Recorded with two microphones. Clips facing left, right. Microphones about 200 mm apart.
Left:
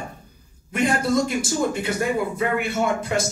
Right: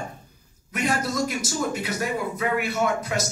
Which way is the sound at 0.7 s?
25° left (ahead or behind).